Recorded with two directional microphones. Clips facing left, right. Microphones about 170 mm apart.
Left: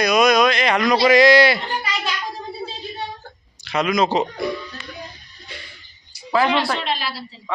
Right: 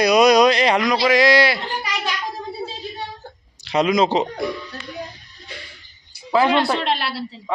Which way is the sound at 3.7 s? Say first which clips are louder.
Right 2 dB; 30° right (ahead or behind).